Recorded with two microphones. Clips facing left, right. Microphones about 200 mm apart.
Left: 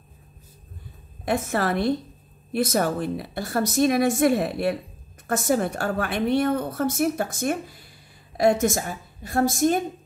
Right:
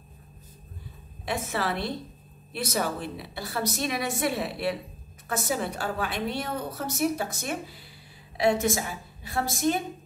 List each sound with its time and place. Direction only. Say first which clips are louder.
1.2 s a woman's voice: left 6 dB; 50° left (ahead or behind)